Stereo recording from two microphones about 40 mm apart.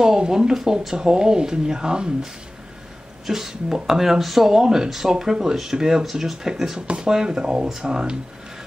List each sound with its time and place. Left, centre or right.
0.0 s speech: centre
3.3 s speech: centre